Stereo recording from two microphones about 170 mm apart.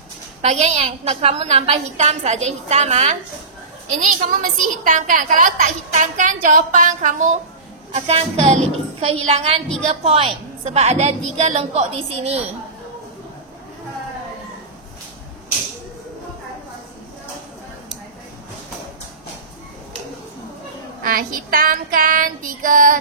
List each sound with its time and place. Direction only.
0.4 s a woman's voice: 40° right (ahead or behind)
4.0 s a woman's voice: 55° right (ahead or behind); by 12.4 s 40° right (ahead or behind)
21.0 s child singing: 55° right (ahead or behind)